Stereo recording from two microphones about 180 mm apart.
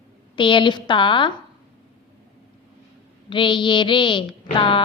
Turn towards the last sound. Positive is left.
turn(degrees=25)  # may be behind; listen again after turning